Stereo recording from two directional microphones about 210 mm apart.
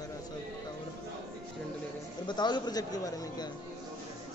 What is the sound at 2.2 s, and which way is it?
A man's voice, 20° left (ahead or behind).